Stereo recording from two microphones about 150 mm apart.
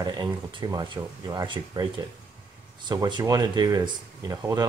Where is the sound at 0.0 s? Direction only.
25° right (ahead or behind).